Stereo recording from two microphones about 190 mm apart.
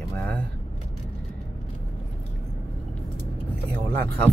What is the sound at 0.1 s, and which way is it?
Vehicle, 10° left (ahead or behind).